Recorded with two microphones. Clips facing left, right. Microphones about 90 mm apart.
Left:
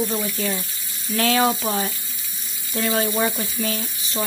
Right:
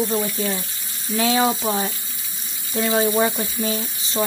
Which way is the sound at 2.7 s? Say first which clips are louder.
Right 3 dB; 20° right (ahead or behind).